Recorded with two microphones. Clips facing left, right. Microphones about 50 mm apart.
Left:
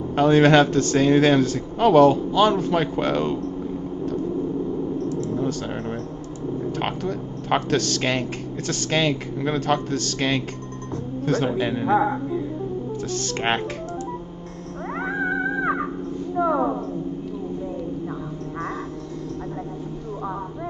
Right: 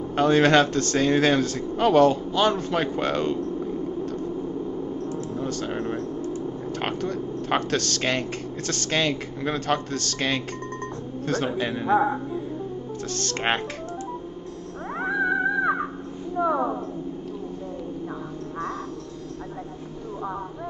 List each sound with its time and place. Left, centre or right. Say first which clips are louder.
0.1 s speech: left 3 dB; centre
5.0 s a sound: left 4 dB; right
5.4 s speech: left 3 dB; centre
6.8 s speech: left 1 dB; centre
12.0 s music: left 2 dB; left
13.1 s music: left 1 dB; centre
16.3 s a sound: left 2 dB; left